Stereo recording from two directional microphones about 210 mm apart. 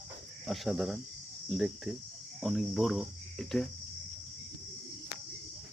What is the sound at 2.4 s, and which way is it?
Cricket, centre (ahead or behind).